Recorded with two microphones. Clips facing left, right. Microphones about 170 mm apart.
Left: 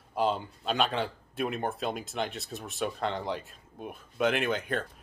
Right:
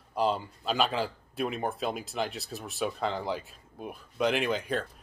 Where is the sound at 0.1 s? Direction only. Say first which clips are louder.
Even; centre (ahead or behind).